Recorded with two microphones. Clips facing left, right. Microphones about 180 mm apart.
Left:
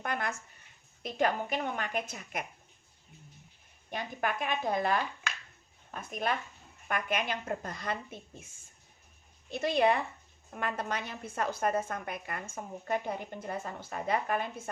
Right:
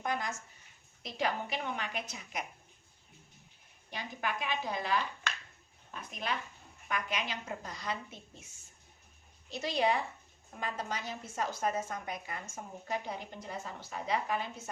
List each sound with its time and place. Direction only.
0.0 s a sound: 60° left (ahead or behind)
1.0 s a woman's voice: 50° left (ahead or behind)
3.8 s a woman's voice: 50° left (ahead or behind)